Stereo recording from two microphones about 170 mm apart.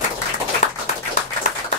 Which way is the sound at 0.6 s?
45° left (ahead or behind).